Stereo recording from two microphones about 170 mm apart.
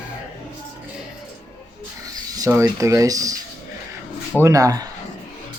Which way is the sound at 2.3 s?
20° right (ahead or behind).